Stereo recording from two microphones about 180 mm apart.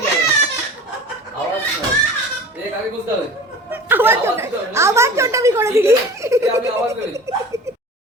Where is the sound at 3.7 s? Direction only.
10° right (ahead or behind).